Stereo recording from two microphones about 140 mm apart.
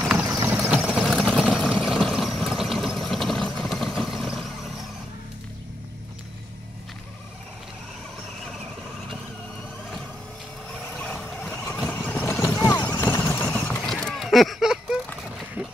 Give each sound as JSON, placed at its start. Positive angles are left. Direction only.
{"t": 0.4, "sound": "vehicle", "side_deg": -15}
{"t": 11.0, "sound": "vehicle", "side_deg": 5}
{"t": 12.5, "sound": "a sound", "side_deg": 30}
{"t": 13.5, "sound": "horse", "side_deg": 5}